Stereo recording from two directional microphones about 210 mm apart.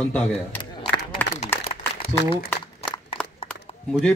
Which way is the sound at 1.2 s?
10° left (ahead or behind).